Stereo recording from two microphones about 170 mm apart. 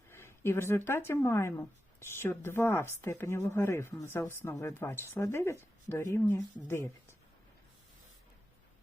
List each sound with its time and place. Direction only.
0.1 s a woman's voice: 15° left (ahead or behind)